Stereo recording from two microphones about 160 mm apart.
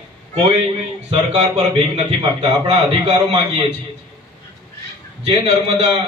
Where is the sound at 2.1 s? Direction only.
35° right (ahead or behind).